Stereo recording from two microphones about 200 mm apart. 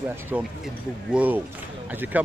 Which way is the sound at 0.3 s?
10° right (ahead or behind).